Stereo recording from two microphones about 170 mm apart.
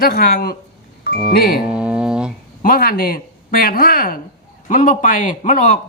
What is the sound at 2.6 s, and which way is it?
A man's voice, 60° left (ahead or behind).